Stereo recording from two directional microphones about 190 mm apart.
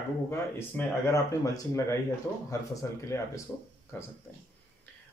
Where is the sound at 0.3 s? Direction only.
15° left (ahead or behind).